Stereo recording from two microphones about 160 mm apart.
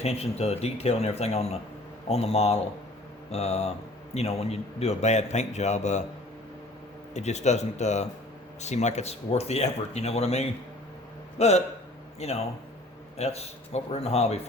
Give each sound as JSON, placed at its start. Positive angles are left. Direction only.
{"t": 0.0, "sound": "a man's voice", "side_deg": 40}
{"t": 7.1, "sound": "a man's voice", "side_deg": 45}
{"t": 13.1, "sound": "speech", "side_deg": 40}